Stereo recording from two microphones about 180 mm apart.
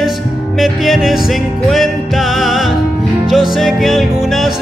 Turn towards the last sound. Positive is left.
turn(degrees=0)  # may be behind; listen again after turning